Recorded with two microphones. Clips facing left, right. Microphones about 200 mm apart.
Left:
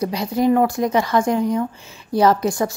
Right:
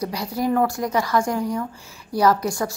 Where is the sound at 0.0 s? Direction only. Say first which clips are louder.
Left 5 dB; 20° left (ahead or behind).